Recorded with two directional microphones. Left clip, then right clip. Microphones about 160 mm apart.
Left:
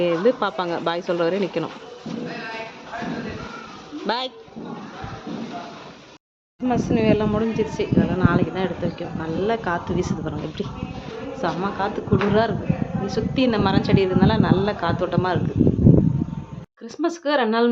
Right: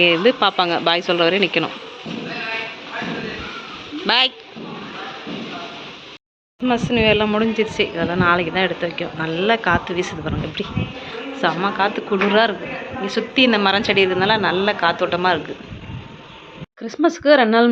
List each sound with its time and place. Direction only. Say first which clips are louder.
0.0 s speech: right 5 dB; 10° left (ahead or behind)
4.0 s speech: right 9 dB; 5° left (ahead or behind)
6.7 s speech: right 4 dB; 5° right (ahead or behind)
16.8 s speech: right 7 dB; 20° right (ahead or behind)